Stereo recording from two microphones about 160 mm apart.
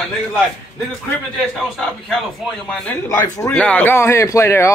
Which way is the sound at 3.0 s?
20° left (ahead or behind).